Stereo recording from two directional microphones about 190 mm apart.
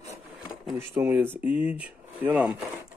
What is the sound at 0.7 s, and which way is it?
Speech, 10° right (ahead or behind).